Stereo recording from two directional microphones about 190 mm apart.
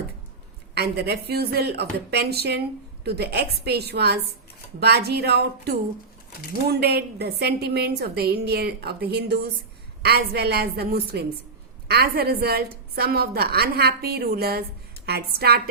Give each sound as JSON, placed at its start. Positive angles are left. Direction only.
{"t": 0.7, "sound": "a woman's voice", "side_deg": -60}